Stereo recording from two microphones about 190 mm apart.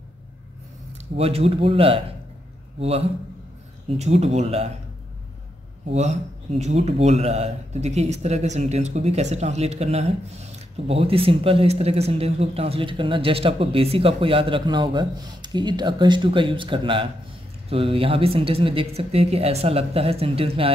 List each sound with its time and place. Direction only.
1.1 s speech: 30° right (ahead or behind)
5.9 s speech: 35° right (ahead or behind)